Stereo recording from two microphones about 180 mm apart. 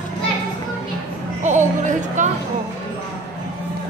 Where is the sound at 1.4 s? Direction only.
45° right (ahead or behind).